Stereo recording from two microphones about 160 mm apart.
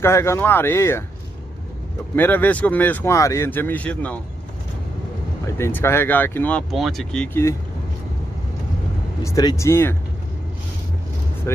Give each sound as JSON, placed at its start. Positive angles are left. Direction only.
{"t": 0.0, "sound": "speech", "side_deg": 15}
{"t": 2.1, "sound": "speech", "side_deg": 10}
{"t": 5.6, "sound": "speech", "side_deg": 15}
{"t": 6.7, "sound": "speech", "side_deg": 0}
{"t": 9.2, "sound": "speech", "side_deg": 20}
{"t": 11.5, "sound": "speech", "side_deg": 15}